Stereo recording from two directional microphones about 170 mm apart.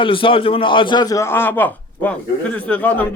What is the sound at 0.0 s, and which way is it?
A man's voice, 30° left (ahead or behind).